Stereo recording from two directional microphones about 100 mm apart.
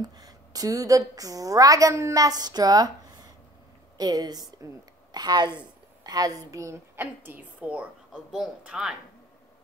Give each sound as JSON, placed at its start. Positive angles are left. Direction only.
{"t": 0.0, "sound": "a woman's voice", "side_deg": -40}